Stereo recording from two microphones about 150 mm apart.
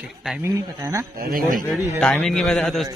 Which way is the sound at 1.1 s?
80° right.